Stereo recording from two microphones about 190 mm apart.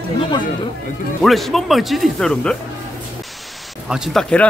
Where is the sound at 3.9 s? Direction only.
Centre (ahead or behind).